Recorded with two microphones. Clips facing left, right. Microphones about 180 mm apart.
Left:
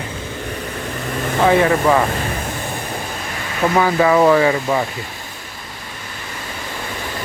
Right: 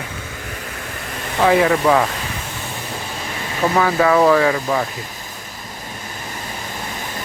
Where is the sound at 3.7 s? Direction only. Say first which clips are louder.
Left 1 dB; centre (ahead or behind).